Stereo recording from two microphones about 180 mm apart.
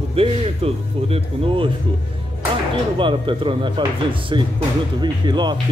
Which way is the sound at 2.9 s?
30° right (ahead or behind).